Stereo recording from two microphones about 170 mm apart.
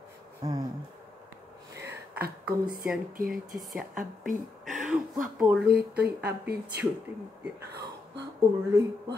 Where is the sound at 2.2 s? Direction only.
60° right (ahead or behind).